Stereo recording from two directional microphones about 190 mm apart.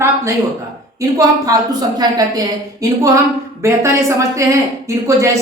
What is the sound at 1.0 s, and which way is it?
A woman's voice, 20° right (ahead or behind).